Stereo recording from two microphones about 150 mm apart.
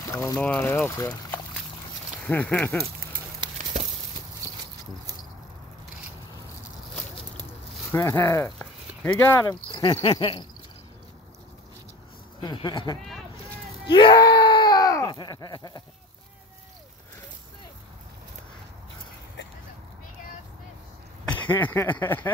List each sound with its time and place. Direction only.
0.4 s speech: 10° left (ahead or behind)
7.9 s speech: 15° left (ahead or behind)
12.4 s speech: 30° left (ahead or behind)
13.8 s groan: 30° left (ahead or behind)
21.5 s speech: 10° left (ahead or behind)